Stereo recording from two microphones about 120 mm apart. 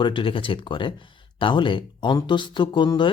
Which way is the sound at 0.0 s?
45° left (ahead or behind).